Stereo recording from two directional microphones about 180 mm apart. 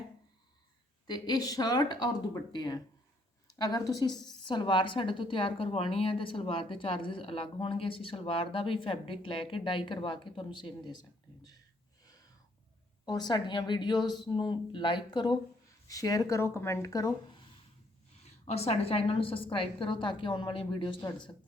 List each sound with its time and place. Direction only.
1.0 s a woman's voice: 25° left (ahead or behind)
13.1 s a woman's voice: 25° left (ahead or behind)
18.2 s a woman's voice: 35° left (ahead or behind)